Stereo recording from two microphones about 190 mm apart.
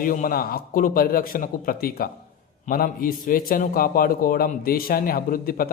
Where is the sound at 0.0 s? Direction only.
45° left (ahead or behind).